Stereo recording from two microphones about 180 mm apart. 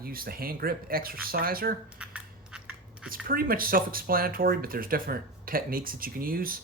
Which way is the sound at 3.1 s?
50° right (ahead or behind).